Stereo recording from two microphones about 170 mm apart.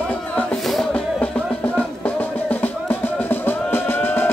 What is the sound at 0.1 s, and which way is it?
Music, 5° left (ahead or behind).